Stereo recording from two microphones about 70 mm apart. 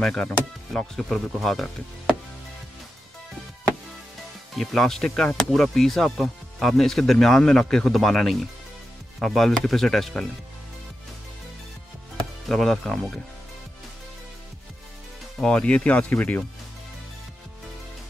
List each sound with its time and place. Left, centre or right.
0.0 s speech: centre
4.6 s speech: centre
12.4 s speech: centre
15.4 s speech: centre